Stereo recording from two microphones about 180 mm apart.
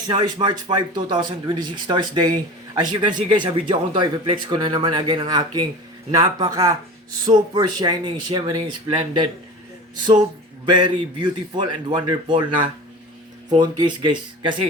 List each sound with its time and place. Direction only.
0.1 s speech: 25° right (ahead or behind)
10.7 s speech: 25° right (ahead or behind)